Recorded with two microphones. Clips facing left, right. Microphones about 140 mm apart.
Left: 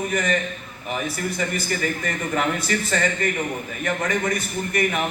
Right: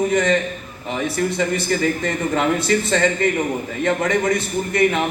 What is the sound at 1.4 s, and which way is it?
A man's voice, 25° right (ahead or behind).